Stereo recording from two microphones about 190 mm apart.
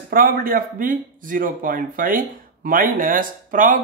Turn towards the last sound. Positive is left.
turn(degrees=-45)  # may be behind; listen again after turning